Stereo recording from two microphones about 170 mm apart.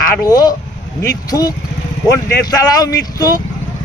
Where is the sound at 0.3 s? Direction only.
20° left (ahead or behind).